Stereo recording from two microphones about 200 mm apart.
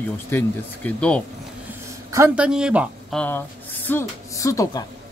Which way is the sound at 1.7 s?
15° right (ahead or behind).